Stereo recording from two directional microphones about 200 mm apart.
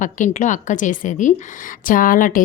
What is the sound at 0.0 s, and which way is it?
A woman's voice, 40° left (ahead or behind).